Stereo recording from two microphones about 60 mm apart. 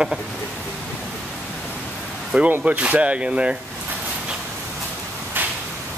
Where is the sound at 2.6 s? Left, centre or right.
Right.